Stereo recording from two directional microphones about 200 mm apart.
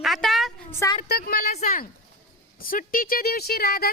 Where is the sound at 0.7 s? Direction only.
15° left (ahead or behind).